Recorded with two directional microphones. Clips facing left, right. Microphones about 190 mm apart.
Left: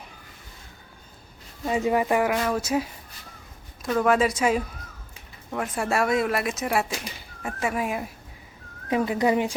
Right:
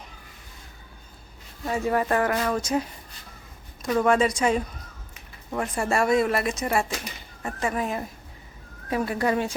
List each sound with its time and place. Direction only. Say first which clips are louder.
1.6 s speech: left 2 dB; 15° left (ahead or behind)